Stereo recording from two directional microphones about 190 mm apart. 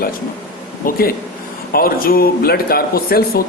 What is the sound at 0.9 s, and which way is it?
Speech, 50° left (ahead or behind).